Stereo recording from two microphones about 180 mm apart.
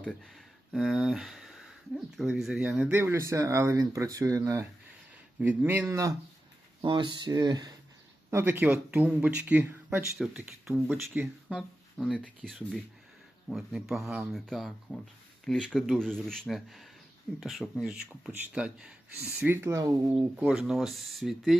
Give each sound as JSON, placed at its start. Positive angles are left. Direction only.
{"t": 0.0, "sound": "speech", "side_deg": 5}
{"t": 6.8, "sound": "speech", "side_deg": -25}
{"t": 11.4, "sound": "speech", "side_deg": 0}
{"t": 20.4, "sound": "speech", "side_deg": -5}